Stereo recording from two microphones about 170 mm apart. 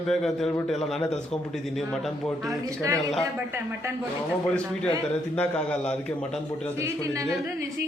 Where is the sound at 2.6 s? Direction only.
20° right (ahead or behind).